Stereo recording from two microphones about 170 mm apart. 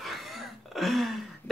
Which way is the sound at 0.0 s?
Centre (ahead or behind).